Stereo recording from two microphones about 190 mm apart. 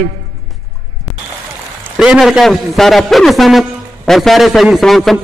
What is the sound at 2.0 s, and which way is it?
A man's voice, centre (ahead or behind).